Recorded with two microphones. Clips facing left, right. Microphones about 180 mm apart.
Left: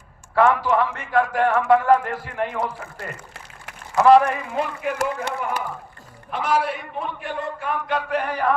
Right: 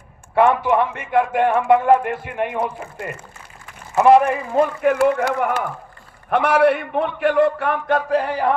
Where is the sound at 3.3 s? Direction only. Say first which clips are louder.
Left 1 dB; 85° left.